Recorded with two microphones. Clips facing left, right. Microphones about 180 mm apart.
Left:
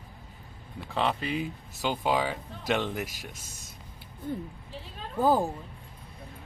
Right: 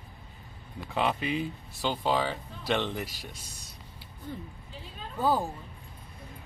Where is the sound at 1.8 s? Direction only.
10° left (ahead or behind).